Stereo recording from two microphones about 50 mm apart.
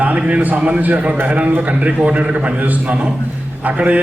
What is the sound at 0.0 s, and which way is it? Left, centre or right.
A man's voice, right.